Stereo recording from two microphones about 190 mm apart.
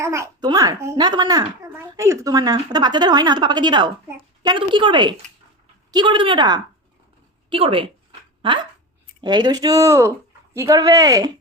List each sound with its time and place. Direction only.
0.0 s a child's voice: 15° right (ahead or behind)